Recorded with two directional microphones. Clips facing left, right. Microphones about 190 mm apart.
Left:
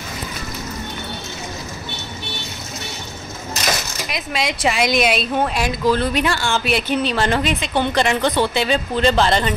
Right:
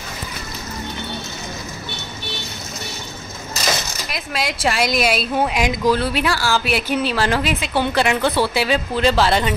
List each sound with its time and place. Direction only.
4.1 s speech: centre (ahead or behind)
5.9 s speech: 5° right (ahead or behind)